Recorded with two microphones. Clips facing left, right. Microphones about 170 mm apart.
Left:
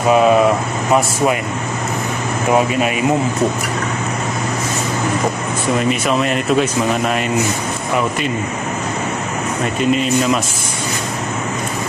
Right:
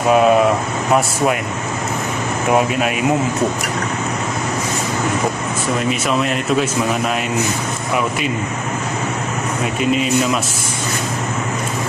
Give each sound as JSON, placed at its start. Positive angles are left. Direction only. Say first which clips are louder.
{"t": 5.8, "sound": "speech", "louder": "left 2 dB", "side_deg": 0}
{"t": 9.8, "sound": "speech", "louder": "left 1 dB", "side_deg": -5}